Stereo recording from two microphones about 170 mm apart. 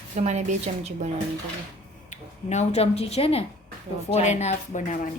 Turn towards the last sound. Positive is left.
turn(degrees=45)  # may be behind; listen again after turning